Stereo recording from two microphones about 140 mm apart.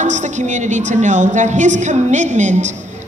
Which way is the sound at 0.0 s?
60° right (ahead or behind).